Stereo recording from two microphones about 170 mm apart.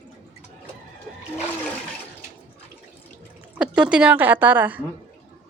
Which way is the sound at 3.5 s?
5° right (ahead or behind).